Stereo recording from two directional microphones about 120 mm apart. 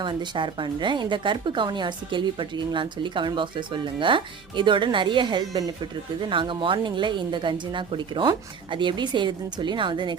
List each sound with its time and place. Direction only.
0.0 s speech: 40° right (ahead or behind)